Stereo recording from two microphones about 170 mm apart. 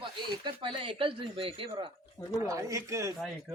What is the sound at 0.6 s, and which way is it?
Speech, 30° right (ahead or behind).